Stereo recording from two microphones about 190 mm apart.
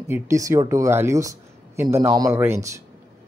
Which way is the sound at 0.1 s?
15° right (ahead or behind).